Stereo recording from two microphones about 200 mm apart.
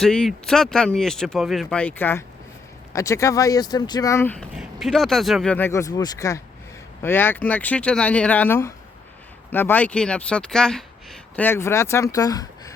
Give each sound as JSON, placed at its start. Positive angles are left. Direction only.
{"t": 0.0, "sound": "speech", "side_deg": 5}